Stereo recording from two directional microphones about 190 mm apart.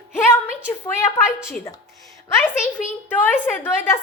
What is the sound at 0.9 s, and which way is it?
Speech, 15° left (ahead or behind).